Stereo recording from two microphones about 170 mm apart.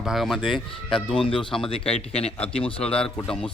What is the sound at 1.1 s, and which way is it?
Speech, 30° left (ahead or behind).